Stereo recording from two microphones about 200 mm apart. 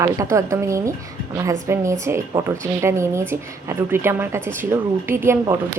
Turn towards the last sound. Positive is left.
turn(degrees=-15)  # may be behind; listen again after turning